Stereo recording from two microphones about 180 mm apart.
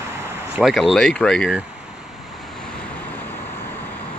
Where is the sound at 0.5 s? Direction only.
Centre (ahead or behind).